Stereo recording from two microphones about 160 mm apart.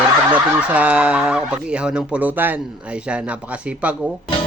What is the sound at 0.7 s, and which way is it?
Speech, 10° right (ahead or behind).